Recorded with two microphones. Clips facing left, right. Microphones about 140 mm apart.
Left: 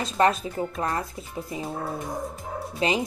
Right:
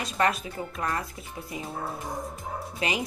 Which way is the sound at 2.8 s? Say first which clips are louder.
Left 5 dB; 30° left (ahead or behind).